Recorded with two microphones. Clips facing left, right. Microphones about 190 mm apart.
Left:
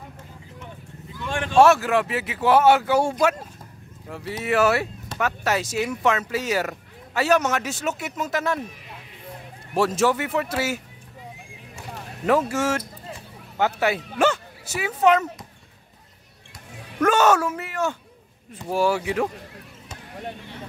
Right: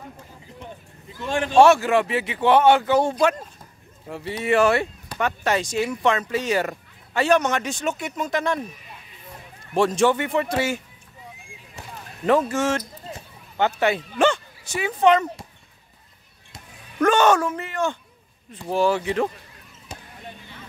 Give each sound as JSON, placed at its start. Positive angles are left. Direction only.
{"t": 1.2, "sound": "speech", "side_deg": -30}
{"t": 1.6, "sound": "speech", "side_deg": 0}
{"t": 9.8, "sound": "speech", "side_deg": 5}
{"t": 12.3, "sound": "speech", "side_deg": 5}
{"t": 17.0, "sound": "speech", "side_deg": 5}
{"t": 20.2, "sound": "a sound", "side_deg": 65}